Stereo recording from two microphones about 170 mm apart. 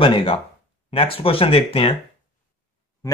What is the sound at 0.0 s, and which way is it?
Speech, 30° left (ahead or behind).